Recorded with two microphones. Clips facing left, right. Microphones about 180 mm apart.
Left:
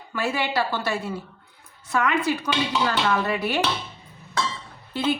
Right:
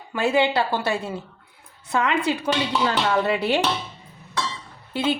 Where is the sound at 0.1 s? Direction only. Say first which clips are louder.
Right 5 dB; 20° right (ahead or behind).